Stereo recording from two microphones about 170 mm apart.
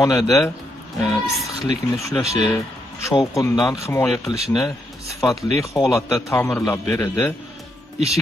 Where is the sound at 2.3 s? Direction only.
20° left (ahead or behind).